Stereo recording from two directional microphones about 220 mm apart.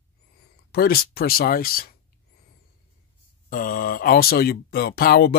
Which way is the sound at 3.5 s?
40° left (ahead or behind).